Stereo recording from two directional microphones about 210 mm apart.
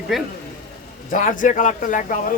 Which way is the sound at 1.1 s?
40° left (ahead or behind).